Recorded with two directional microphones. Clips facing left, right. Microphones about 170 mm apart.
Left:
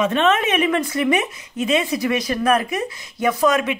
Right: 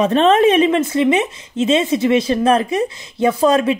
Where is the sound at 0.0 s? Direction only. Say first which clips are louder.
Right 6 dB; 35° right (ahead or behind).